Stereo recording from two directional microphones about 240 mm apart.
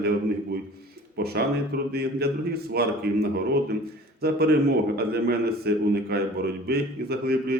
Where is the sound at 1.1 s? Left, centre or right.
Right.